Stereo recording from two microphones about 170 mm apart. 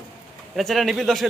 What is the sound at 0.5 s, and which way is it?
Speech, centre (ahead or behind).